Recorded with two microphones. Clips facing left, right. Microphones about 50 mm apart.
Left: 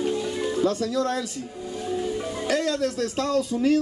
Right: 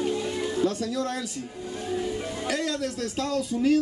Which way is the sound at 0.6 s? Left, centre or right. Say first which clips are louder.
Left 4 dB; left.